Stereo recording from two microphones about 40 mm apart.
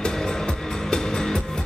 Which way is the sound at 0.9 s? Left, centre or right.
Centre.